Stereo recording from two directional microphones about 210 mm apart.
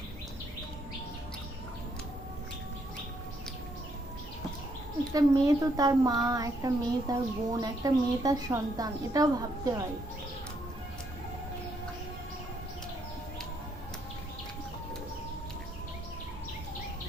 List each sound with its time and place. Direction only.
5.1 s a child's voice: 15° right (ahead or behind)